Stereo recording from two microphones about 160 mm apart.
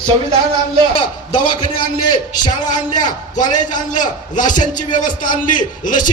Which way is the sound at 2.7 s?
50° left (ahead or behind).